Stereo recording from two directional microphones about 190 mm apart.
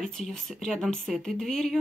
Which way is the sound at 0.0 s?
Centre (ahead or behind).